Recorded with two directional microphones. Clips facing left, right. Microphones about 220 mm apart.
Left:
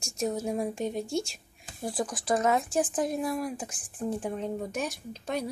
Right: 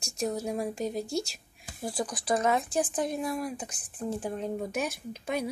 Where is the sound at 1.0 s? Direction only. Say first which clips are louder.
Left 1 dB; 40° right (ahead or behind).